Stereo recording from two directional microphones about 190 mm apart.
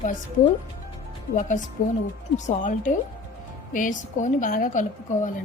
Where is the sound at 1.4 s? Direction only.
40° left (ahead or behind).